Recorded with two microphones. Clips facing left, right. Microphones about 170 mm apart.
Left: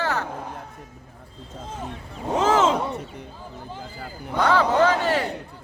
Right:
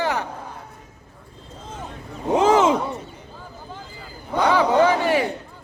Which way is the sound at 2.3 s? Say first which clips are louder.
Right 3 dB; 15° right (ahead or behind).